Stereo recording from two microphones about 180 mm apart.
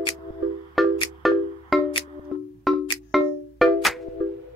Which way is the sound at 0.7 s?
Centre (ahead or behind).